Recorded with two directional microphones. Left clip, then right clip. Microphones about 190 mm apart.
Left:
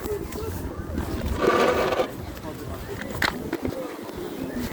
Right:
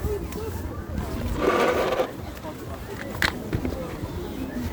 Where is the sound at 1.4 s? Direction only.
5° left (ahead or behind).